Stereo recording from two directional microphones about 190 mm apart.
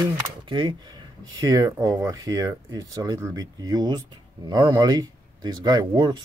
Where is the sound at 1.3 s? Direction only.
20° right (ahead or behind).